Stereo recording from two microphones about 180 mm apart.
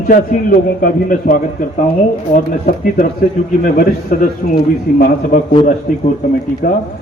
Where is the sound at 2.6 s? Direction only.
55° left (ahead or behind).